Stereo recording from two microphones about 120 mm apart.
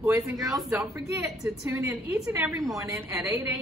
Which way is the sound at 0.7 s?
25° right (ahead or behind).